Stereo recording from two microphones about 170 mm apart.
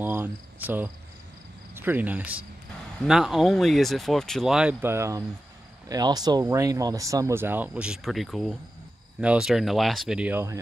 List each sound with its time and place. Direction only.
0.0 s cricket: 10° right (ahead or behind)
1.8 s speech: 10° right (ahead or behind)